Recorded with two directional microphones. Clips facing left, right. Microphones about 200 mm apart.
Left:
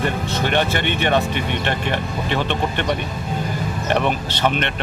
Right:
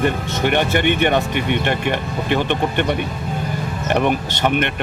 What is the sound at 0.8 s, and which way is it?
Speech, 55° right (ahead or behind).